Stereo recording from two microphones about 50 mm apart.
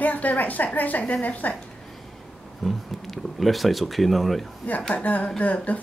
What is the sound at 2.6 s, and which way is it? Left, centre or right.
Speech, centre.